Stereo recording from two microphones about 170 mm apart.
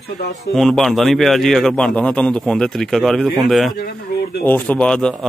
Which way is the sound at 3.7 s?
70° left (ahead or behind).